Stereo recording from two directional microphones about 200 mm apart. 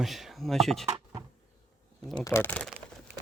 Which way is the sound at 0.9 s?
15° right (ahead or behind).